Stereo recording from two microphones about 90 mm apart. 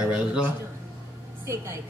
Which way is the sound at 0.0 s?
10° right (ahead or behind).